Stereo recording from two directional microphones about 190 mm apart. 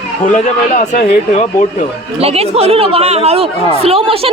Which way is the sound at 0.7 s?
45° left (ahead or behind).